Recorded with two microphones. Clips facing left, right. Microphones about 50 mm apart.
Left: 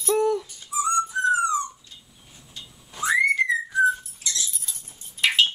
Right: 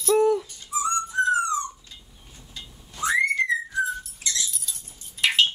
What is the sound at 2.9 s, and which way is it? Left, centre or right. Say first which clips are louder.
Whistling: left 2 dB; centre.